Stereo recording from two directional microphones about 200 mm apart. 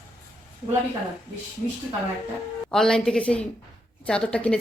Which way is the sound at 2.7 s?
5° left (ahead or behind).